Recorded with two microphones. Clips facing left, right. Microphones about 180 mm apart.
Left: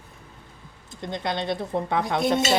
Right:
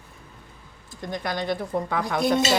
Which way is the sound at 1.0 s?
25° left (ahead or behind).